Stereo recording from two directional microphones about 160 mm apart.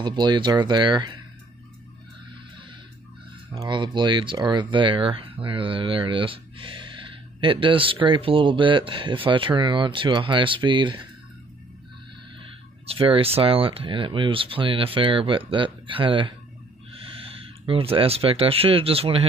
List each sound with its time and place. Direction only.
0.0 s speech: 25° right (ahead or behind)
3.4 s speech: 30° right (ahead or behind)
12.4 s speech: 35° right (ahead or behind)